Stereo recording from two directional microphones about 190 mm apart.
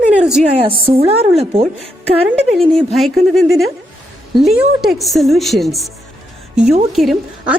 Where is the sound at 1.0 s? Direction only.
30° right (ahead or behind).